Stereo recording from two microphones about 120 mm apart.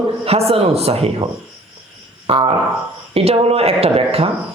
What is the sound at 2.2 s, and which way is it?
A man's voice, 50° right (ahead or behind).